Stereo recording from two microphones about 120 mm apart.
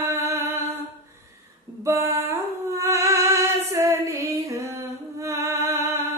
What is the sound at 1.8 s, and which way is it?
Music, 25° right (ahead or behind).